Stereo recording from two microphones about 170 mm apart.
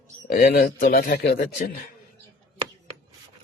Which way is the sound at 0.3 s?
60° left (ahead or behind).